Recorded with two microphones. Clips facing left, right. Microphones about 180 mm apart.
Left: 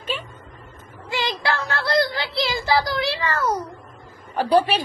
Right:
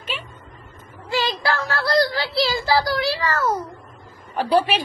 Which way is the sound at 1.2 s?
20° left (ahead or behind).